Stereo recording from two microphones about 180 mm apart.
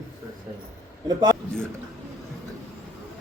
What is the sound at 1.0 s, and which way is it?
Speech, 20° right (ahead or behind).